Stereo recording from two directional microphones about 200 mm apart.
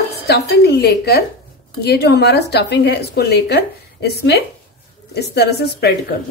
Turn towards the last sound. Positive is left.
turn(degrees=55)  # may be behind; listen again after turning